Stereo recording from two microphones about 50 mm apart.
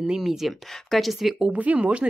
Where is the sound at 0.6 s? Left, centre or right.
Centre.